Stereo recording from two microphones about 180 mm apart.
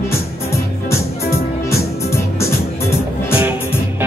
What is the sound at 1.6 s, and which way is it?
Music, 15° left (ahead or behind).